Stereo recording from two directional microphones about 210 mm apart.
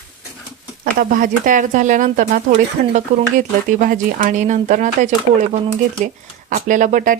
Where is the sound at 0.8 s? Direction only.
40° right (ahead or behind).